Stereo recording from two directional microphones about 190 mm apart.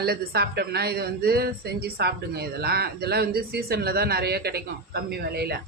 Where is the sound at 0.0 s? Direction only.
60° right (ahead or behind).